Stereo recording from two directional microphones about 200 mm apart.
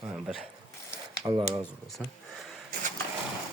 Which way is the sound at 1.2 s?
25° right (ahead or behind).